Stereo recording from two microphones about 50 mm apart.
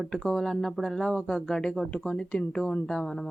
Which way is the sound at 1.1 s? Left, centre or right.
Centre.